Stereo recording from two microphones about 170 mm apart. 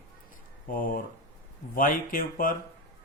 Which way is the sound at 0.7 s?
55° left (ahead or behind).